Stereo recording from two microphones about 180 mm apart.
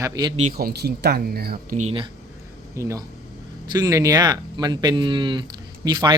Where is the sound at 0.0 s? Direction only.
20° right (ahead or behind).